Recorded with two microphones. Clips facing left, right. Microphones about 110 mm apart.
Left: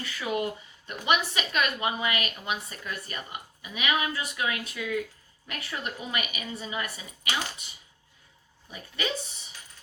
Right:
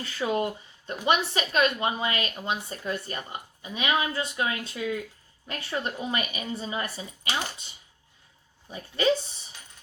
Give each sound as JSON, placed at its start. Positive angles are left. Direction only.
{"t": 0.0, "sound": "a woman's voice", "side_deg": -30}
{"t": 8.7, "sound": "a woman's voice", "side_deg": -30}